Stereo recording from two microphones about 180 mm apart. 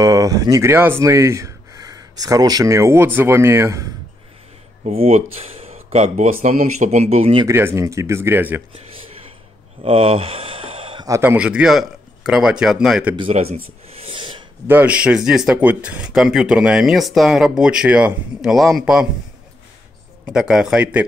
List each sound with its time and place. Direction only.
0.0 s speech: 20° right (ahead or behind)
4.8 s speech: 35° right (ahead or behind)
7.4 s speech: 15° right (ahead or behind)
9.8 s a sound: 30° right (ahead or behind)
11.1 s speech: 15° right (ahead or behind)
13.1 s a sound: 30° right (ahead or behind)
14.7 s speech: 10° right (ahead or behind)
20.2 s speech: 5° right (ahead or behind)